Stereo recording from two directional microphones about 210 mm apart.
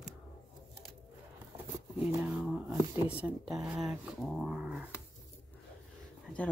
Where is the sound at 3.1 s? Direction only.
5° right (ahead or behind).